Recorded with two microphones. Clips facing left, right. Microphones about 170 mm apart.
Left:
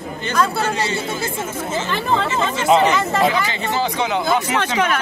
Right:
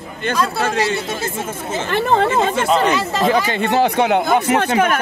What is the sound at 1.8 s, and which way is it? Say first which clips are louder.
Speech: right 7 dB; 55° right (ahead or behind).